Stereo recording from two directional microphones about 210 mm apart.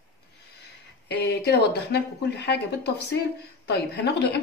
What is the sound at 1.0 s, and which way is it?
Speech, 50° left (ahead or behind).